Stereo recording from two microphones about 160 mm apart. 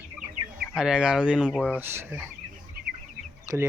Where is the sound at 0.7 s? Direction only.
5° right (ahead or behind).